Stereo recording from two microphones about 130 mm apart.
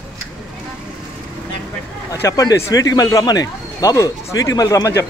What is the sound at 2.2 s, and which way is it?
Speech, 25° left (ahead or behind).